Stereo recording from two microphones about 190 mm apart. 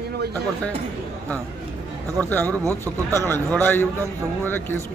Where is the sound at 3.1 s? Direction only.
10° left (ahead or behind).